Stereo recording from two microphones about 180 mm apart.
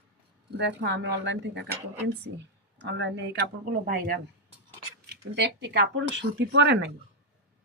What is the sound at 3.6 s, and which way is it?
Speech, 55° right (ahead or behind).